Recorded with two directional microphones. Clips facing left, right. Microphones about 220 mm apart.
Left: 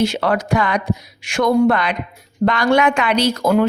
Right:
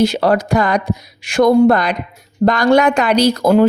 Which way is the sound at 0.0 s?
35° right (ahead or behind).